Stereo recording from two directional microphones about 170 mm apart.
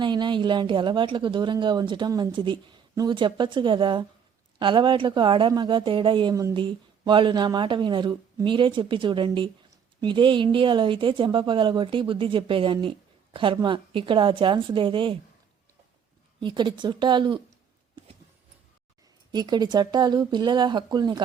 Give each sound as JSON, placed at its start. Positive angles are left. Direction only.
{"t": 0.0, "sound": "a woman's voice", "side_deg": -25}
{"t": 16.4, "sound": "a woman's voice", "side_deg": -30}
{"t": 19.3, "sound": "a woman's voice", "side_deg": -25}